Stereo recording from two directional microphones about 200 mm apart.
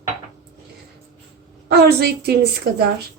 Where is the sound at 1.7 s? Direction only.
55° right (ahead or behind).